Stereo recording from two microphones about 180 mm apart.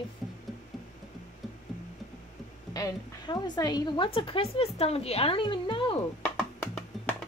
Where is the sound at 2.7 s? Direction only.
20° left (ahead or behind).